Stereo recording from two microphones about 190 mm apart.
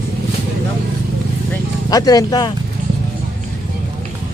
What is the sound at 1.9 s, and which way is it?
Speech, 20° left (ahead or behind).